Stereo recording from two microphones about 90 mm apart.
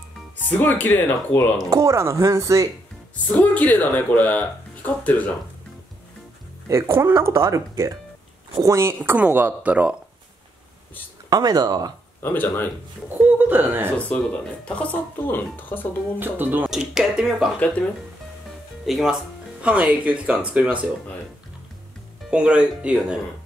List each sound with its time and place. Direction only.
0.5 s speech: 20° left (ahead or behind)
1.7 s speech: 35° right (ahead or behind)
3.3 s speech: 15° left (ahead or behind)
6.7 s speech: 30° right (ahead or behind); by 9.9 s 15° right (ahead or behind)
11.2 s speech: 45° right (ahead or behind)
12.2 s speech: 25° left (ahead or behind)
13.2 s speech: 20° right (ahead or behind)
13.9 s speech: 15° left (ahead or behind)
16.2 s speech: 20° right (ahead or behind)
16.7 s speech: 5° right (ahead or behind)
18.9 s speech: centre (ahead or behind)
19.6 s speech: 15° right (ahead or behind)
22.3 s speech: 10° right (ahead or behind)